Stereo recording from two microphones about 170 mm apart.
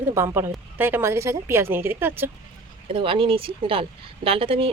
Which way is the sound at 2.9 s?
30° right (ahead or behind).